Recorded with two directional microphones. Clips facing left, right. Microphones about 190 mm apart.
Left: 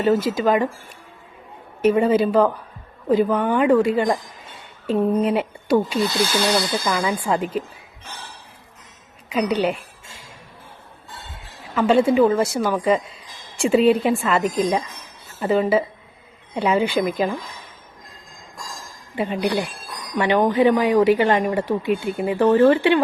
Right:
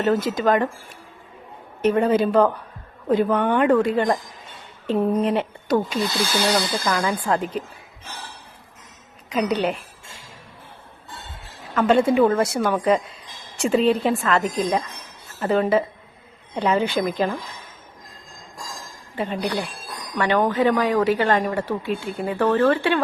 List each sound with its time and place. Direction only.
0.0 s a woman's voice: 5° left (ahead or behind)
1.8 s a woman's voice: 5° left (ahead or behind)
9.3 s a woman's voice: 5° left (ahead or behind)
11.7 s a woman's voice: 5° left (ahead or behind)
19.1 s a woman's voice: 10° left (ahead or behind)